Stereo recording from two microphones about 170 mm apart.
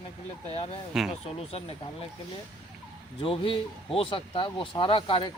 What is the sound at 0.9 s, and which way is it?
Speech, 5° right (ahead or behind).